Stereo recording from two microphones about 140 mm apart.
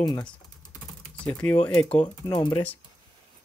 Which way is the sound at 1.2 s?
5° left (ahead or behind).